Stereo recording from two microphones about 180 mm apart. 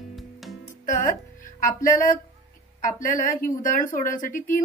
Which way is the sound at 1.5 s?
50° left (ahead or behind).